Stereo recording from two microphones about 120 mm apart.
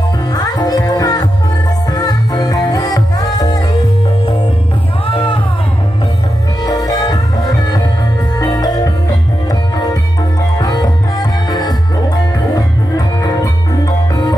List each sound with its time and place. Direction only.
0.3 s music: 30° left (ahead or behind)
5.0 s music: 45° left (ahead or behind)
6.6 s music: 30° left (ahead or behind)
10.6 s music: 30° left (ahead or behind)
12.5 s music: 35° left (ahead or behind)